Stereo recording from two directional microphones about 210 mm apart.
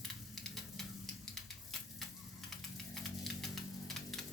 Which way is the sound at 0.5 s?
Centre (ahead or behind).